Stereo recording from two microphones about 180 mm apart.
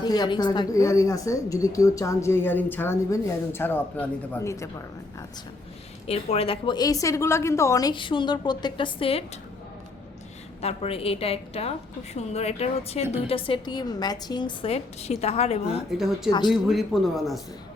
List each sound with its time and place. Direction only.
0.0 s speech: 25° left (ahead or behind)
6.1 s a woman's voice: 35° left (ahead or behind)
10.6 s a woman's voice: 35° left (ahead or behind)
15.9 s a man's voice: centre (ahead or behind)